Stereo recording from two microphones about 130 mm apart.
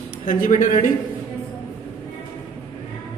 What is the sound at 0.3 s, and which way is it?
Speech, 90° left.